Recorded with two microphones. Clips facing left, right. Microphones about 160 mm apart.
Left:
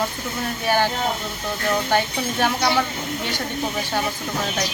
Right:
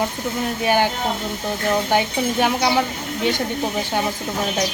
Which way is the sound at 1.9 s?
15° right (ahead or behind).